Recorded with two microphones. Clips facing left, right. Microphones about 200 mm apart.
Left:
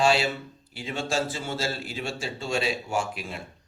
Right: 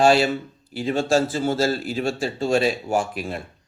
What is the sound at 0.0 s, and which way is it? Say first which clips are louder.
A man's voice: right 6 dB; 45° right (ahead or behind).